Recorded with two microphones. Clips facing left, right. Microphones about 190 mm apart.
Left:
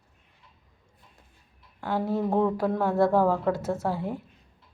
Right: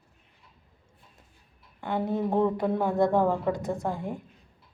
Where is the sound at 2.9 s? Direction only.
15° right (ahead or behind).